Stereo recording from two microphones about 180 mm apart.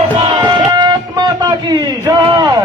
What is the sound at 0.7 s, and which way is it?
Music, 25° right (ahead or behind).